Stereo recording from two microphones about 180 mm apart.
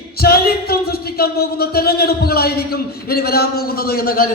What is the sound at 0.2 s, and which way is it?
A man's voice, 60° left (ahead or behind).